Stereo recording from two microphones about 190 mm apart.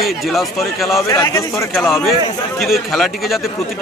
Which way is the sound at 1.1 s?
15° left (ahead or behind).